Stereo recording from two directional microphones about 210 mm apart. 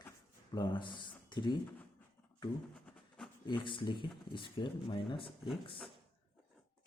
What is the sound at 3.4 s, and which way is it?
Speech, 25° left (ahead or behind).